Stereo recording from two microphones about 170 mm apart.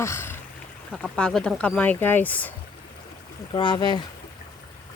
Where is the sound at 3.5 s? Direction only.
25° left (ahead or behind).